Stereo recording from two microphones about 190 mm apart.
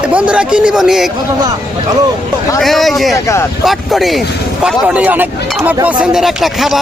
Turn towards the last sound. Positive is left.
turn(degrees=0)  # may be behind; listen again after turning